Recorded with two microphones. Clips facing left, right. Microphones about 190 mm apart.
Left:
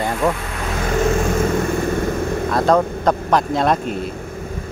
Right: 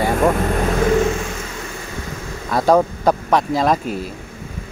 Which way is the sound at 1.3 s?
50° left (ahead or behind).